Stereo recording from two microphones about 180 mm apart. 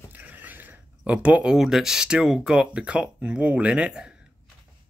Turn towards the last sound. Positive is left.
turn(degrees=-5)  # may be behind; listen again after turning